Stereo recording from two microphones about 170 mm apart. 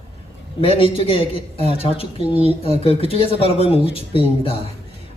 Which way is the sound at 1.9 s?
35° left (ahead or behind).